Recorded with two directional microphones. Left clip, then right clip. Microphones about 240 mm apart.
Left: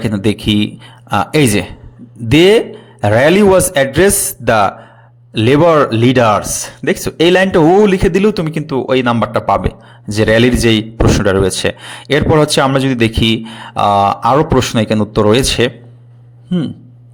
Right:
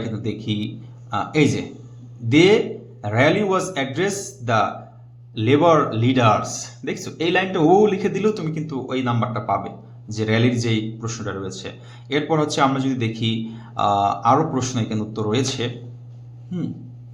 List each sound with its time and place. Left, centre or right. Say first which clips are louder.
0.1 s speech: left 13 dB; left